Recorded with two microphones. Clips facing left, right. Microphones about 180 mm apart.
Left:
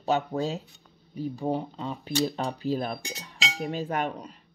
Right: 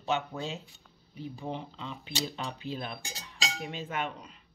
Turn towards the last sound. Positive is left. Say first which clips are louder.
# left 6 dB
turn(degrees=40)  # may be behind; listen again after turning